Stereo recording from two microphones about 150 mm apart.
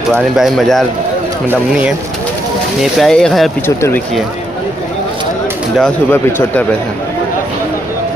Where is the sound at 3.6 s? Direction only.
15° left (ahead or behind).